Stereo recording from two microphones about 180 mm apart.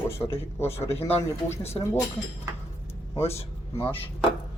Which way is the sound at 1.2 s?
15° left (ahead or behind).